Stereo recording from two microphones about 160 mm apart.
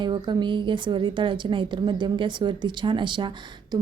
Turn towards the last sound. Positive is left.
turn(degrees=-30)  # may be behind; listen again after turning